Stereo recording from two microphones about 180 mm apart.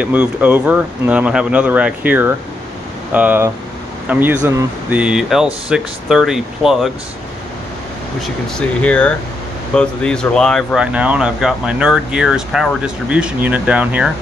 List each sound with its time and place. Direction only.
0.0 s speech: 10° right (ahead or behind)
8.5 s speech: 5° left (ahead or behind)